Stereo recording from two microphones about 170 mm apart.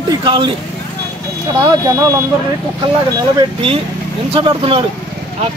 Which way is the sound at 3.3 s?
35° right (ahead or behind).